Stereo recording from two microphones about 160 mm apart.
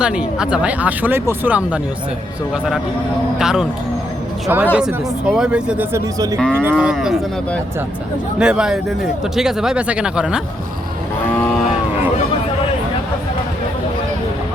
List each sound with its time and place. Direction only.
0.0 s speech: 5° right (ahead or behind)
3.3 s speech: 5° right (ahead or behind)
6.1 s cattle: 20° right (ahead or behind)
6.5 s speech: 10° right (ahead or behind)
8.4 s speech: 5° right (ahead or behind)